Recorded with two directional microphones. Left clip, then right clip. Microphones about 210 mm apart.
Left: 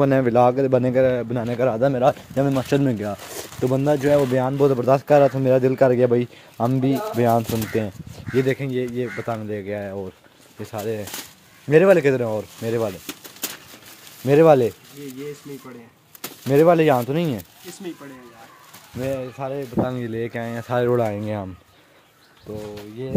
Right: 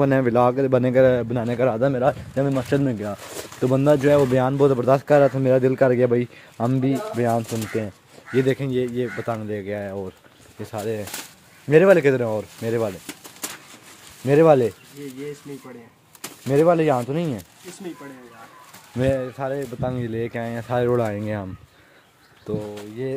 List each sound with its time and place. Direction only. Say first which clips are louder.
0.0 s speech: left 2 dB; 5° left (ahead or behind)
3.6 s speech: right 2 dB; 15° right (ahead or behind); by 7.9 s 10° left (ahead or behind)
8.4 s speech: right 1 dB; 10° right (ahead or behind)
15.0 s speech: right 1 dB; 20° left (ahead or behind)
16.4 s speech: left 2 dB; 15° left (ahead or behind)
19.1 s speech: right 2 dB; 5° right (ahead or behind)
23.0 s speech: right 4 dB; 10° right (ahead or behind)